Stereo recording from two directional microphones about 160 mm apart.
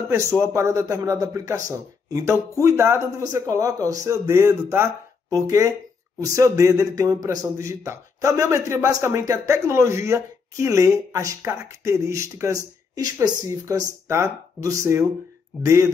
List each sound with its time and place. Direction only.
0.1 s speech: 15° right (ahead or behind)